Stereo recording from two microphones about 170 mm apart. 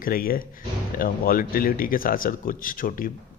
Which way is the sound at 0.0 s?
60° left (ahead or behind).